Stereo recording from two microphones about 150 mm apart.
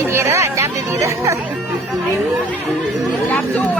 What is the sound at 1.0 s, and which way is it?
Music, 20° right (ahead or behind).